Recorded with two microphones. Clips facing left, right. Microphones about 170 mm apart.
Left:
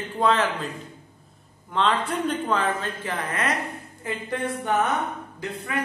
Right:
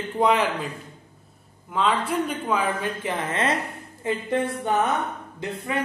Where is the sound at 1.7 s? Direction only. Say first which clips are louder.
Even; 5° right (ahead or behind).